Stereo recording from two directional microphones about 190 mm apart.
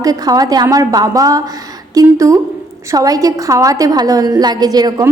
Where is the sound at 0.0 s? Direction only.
20° right (ahead or behind).